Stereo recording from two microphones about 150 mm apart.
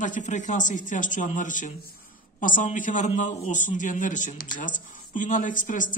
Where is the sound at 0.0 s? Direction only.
55° left (ahead or behind).